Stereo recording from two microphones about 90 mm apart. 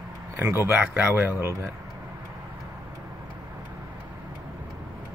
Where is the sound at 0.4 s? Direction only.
25° right (ahead or behind).